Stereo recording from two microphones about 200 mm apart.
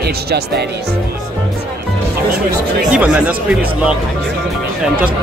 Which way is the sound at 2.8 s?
5° right (ahead or behind).